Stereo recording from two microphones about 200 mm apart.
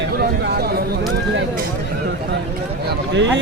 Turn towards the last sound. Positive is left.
turn(degrees=-65)  # may be behind; listen again after turning